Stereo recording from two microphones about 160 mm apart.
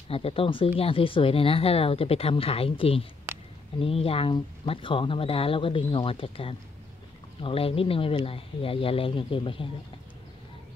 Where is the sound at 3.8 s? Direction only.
35° left (ahead or behind).